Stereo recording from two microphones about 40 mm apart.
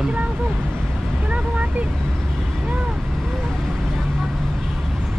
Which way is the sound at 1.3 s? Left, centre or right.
Right.